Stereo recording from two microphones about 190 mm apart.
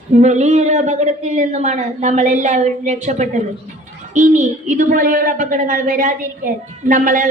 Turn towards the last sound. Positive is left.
turn(degrees=-45)  # may be behind; listen again after turning